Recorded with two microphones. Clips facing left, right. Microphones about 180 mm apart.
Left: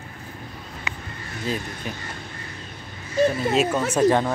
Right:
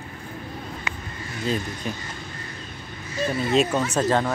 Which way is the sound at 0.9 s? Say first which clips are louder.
Left 2 dB; 50° right (ahead or behind).